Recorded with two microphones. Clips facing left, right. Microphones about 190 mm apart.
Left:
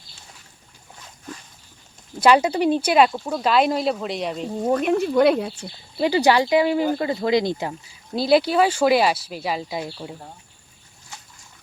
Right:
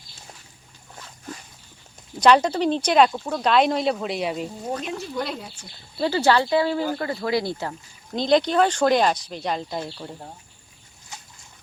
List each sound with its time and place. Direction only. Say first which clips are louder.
2.2 s speech: left 1 dB; 5° left (ahead or behind)
4.6 s speech: left 10 dB; 55° left (ahead or behind)
6.0 s speech: left 2 dB; 15° left (ahead or behind)